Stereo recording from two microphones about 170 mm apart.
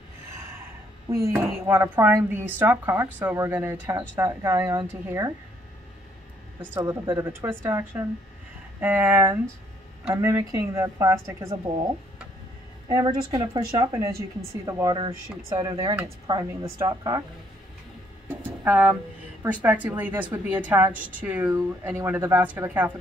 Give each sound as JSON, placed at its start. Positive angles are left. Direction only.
{"t": 0.3, "sound": "a sound", "side_deg": -15}
{"t": 1.1, "sound": "a woman's voice", "side_deg": -15}
{"t": 6.6, "sound": "a woman's voice", "side_deg": -15}
{"t": 12.8, "sound": "a woman's voice", "side_deg": -25}
{"t": 15.0, "sound": "a woman's voice", "side_deg": -30}
{"t": 18.6, "sound": "a woman's voice", "side_deg": -10}